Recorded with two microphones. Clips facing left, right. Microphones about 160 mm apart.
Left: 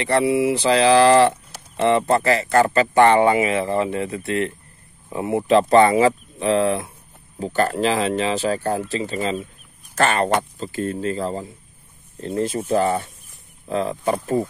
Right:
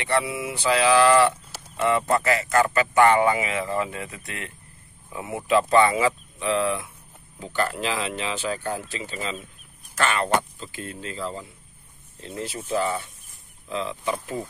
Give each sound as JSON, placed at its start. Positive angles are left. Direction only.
{"t": 0.0, "sound": "speech", "side_deg": 35}